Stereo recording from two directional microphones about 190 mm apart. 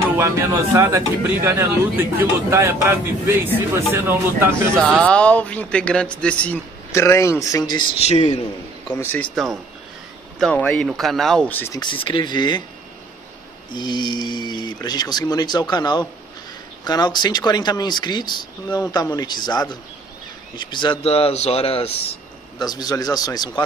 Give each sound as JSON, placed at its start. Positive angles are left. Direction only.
{"t": 0.2, "sound": "speech", "side_deg": -15}
{"t": 4.8, "sound": "a man's voice", "side_deg": 5}
{"t": 8.9, "sound": "a man's voice", "side_deg": 10}
{"t": 11.8, "sound": "speech", "side_deg": 25}
{"t": 13.7, "sound": "speech", "side_deg": 25}
{"t": 22.6, "sound": "speech", "side_deg": 20}